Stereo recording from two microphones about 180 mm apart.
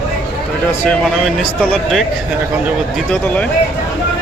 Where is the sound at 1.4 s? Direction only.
Centre (ahead or behind).